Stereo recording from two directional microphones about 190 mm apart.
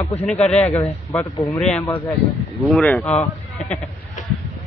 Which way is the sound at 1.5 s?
Centre (ahead or behind).